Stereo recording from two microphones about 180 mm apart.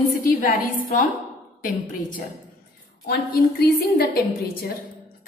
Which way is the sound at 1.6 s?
50° left (ahead or behind).